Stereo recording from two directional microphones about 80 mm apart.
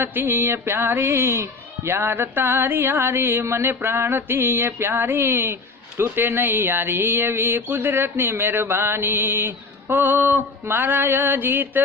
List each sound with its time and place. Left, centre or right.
0.0 s speech: right